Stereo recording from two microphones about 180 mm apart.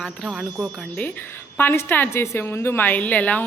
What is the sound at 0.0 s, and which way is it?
A woman's voice, centre (ahead or behind).